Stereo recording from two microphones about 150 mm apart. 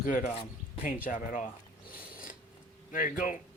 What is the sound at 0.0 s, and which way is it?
Speech, 60° left (ahead or behind).